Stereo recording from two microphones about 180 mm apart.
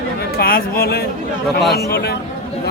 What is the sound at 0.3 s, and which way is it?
Speech, 55° left (ahead or behind).